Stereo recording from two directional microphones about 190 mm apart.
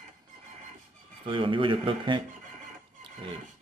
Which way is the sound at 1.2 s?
25° right (ahead or behind).